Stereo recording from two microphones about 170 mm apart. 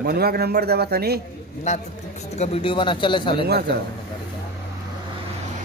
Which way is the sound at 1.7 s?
40° left (ahead or behind).